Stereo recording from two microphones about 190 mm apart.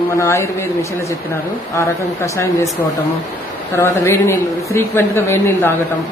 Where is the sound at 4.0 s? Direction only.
15° left (ahead or behind).